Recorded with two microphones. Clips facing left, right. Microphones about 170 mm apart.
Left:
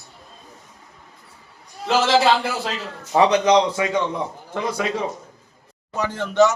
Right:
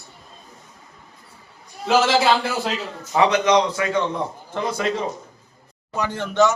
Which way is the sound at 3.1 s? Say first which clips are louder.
Left 2 dB; 35° left (ahead or behind).